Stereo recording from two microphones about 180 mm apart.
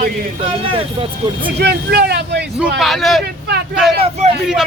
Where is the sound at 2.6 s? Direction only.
Centre (ahead or behind).